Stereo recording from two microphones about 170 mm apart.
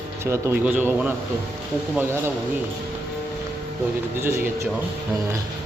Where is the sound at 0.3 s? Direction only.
15° right (ahead or behind).